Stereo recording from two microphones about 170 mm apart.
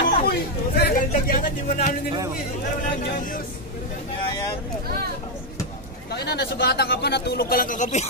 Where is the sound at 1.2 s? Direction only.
50° left (ahead or behind).